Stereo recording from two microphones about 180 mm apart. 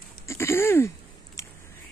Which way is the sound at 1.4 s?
15° left (ahead or behind).